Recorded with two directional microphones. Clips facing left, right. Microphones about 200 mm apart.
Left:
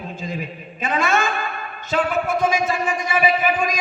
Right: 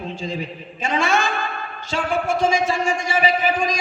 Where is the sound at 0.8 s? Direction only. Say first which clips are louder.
Even; 30° right (ahead or behind).